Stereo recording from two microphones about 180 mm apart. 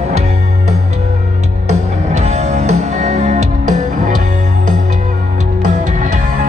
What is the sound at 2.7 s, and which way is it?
Music, 40° right (ahead or behind).